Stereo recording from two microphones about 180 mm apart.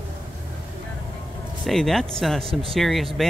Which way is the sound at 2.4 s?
30° right (ahead or behind).